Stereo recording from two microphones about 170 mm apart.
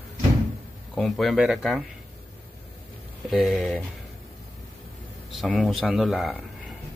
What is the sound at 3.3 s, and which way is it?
Speech, centre (ahead or behind).